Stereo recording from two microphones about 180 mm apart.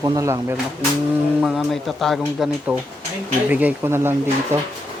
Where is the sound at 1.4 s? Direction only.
5° right (ahead or behind).